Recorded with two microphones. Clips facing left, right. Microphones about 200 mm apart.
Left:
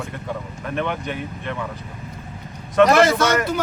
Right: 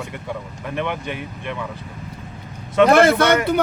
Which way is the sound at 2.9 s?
60° right (ahead or behind).